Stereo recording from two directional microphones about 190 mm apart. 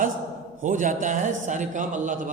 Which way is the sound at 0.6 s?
40° right (ahead or behind).